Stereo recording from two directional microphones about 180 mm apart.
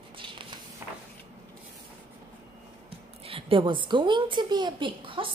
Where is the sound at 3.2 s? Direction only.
30° right (ahead or behind).